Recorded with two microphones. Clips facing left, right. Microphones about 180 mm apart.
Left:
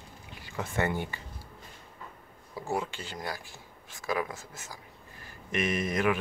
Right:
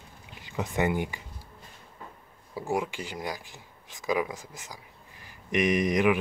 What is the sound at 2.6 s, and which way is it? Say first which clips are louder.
Speech: right 3 dB; 15° right (ahead or behind).